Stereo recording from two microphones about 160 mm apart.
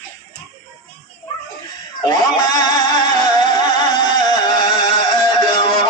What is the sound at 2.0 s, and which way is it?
Music, 25° left (ahead or behind).